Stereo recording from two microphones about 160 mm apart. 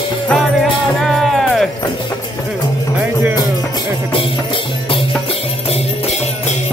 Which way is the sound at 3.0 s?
10° right (ahead or behind).